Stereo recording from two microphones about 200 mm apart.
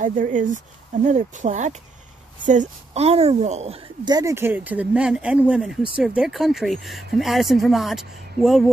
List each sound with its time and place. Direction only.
0.0 s a woman's voice: 40° right (ahead or behind); by 8.6 s centre (ahead or behind)